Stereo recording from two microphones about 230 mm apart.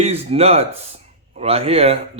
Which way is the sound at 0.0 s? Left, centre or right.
Right.